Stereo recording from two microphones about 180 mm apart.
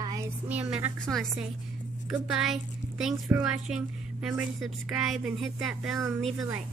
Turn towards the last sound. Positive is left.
turn(degrees=0)  # may be behind; listen again after turning